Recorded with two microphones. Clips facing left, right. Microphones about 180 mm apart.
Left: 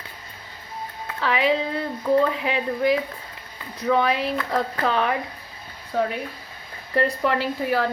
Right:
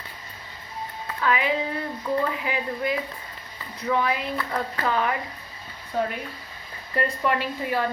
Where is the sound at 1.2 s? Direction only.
90° left.